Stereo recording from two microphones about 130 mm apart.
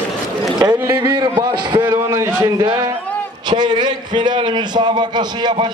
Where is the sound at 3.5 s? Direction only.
35° right (ahead or behind).